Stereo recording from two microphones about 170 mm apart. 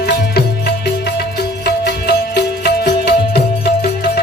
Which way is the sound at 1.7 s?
70° left (ahead or behind).